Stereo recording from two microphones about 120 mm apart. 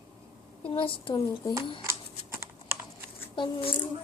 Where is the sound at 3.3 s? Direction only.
45° left (ahead or behind).